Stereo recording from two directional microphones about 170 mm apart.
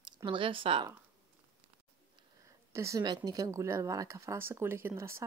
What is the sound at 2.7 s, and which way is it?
Speech, 15° right (ahead or behind).